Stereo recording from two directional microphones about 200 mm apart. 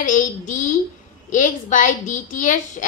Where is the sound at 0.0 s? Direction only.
40° left (ahead or behind).